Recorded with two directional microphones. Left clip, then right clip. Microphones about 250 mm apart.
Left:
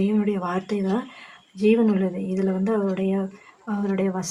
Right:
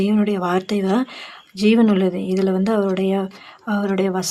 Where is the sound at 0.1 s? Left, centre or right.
Right.